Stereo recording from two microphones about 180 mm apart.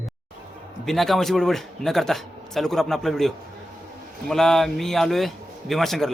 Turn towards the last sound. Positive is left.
turn(degrees=0)  # may be behind; listen again after turning